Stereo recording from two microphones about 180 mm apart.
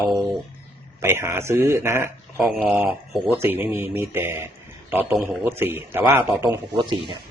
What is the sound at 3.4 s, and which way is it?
A man's voice, 10° right (ahead or behind).